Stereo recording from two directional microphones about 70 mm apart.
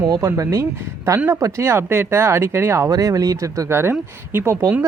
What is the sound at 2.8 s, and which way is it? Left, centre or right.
Speech, right.